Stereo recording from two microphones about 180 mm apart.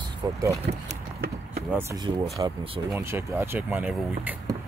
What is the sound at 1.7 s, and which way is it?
Speech, 20° right (ahead or behind).